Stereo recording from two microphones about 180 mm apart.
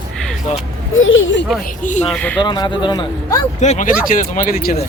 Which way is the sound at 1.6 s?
45° left (ahead or behind).